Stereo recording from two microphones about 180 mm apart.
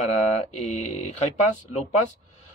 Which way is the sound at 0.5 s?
40° left (ahead or behind).